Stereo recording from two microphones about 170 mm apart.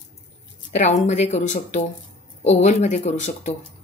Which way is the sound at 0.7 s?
45° left (ahead or behind).